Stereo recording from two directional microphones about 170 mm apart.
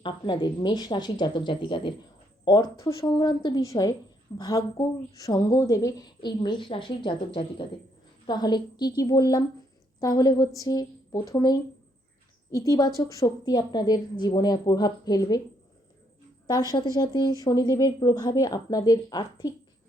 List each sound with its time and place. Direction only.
0.0 s a woman's voice: 25° left (ahead or behind)
8.3 s a woman's voice: 25° left (ahead or behind)
16.7 s a woman's voice: 25° left (ahead or behind)